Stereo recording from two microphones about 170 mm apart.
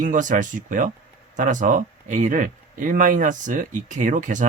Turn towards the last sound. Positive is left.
turn(degrees=-50)  # may be behind; listen again after turning